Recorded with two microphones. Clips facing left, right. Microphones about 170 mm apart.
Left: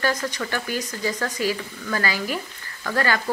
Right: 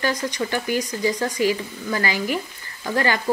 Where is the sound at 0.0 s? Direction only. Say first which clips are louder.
Right 1 dB; 15° right (ahead or behind).